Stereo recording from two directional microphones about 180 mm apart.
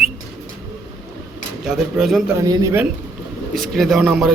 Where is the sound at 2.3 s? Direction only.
20° right (ahead or behind).